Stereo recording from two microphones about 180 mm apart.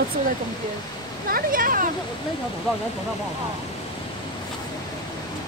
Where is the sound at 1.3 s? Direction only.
50° right (ahead or behind).